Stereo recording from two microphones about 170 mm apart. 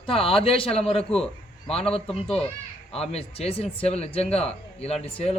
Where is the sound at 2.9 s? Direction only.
35° left (ahead or behind).